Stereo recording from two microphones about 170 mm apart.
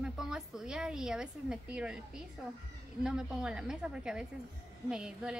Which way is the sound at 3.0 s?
5° right (ahead or behind).